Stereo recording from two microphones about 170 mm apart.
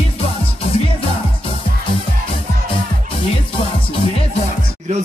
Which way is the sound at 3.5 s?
35° left (ahead or behind).